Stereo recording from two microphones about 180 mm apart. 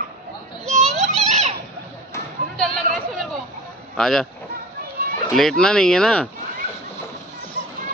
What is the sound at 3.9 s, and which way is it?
Speech, centre (ahead or behind).